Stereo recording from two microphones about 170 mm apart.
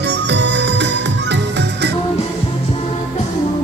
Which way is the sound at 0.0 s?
85° right.